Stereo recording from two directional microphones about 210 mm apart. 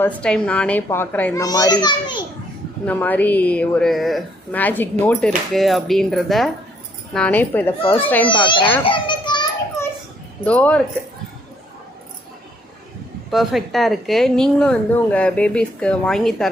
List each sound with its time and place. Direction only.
0.0 s a woman's voice: 5° left (ahead or behind); by 2.2 s 20° left (ahead or behind)
2.8 s a woman's voice: 10° left (ahead or behind)
7.8 s a child's voice: 25° left (ahead or behind)
8.8 s children playing: 25° left (ahead or behind)
10.4 s a woman's voice: 5° left (ahead or behind)
13.3 s a woman's voice: centre (ahead or behind)